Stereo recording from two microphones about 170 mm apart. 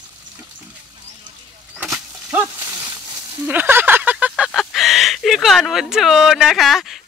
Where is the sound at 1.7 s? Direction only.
Centre (ahead or behind).